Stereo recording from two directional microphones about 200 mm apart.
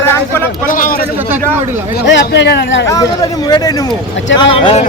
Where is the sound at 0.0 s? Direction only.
10° left (ahead or behind).